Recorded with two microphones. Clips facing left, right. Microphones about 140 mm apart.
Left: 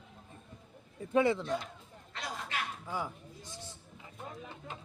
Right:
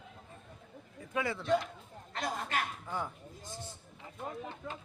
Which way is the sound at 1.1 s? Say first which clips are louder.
Left 8 dB; 25° left (ahead or behind).